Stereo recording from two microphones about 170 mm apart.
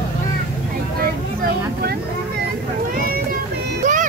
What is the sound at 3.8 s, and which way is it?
Vehicle, 45° right (ahead or behind).